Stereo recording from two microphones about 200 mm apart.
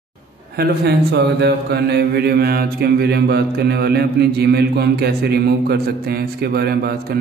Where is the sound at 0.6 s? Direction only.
50° right (ahead or behind).